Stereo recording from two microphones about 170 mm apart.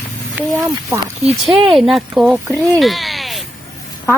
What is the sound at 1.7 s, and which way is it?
Speech, centre (ahead or behind).